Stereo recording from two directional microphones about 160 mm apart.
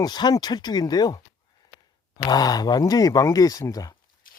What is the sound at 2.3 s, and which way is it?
Speech, 25° left (ahead or behind).